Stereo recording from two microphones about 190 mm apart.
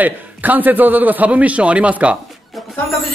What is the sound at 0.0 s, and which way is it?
A man's voice, 10° right (ahead or behind).